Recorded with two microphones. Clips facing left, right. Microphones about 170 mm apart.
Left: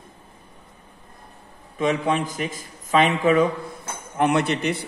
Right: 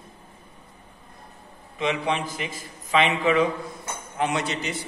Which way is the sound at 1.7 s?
45° left (ahead or behind).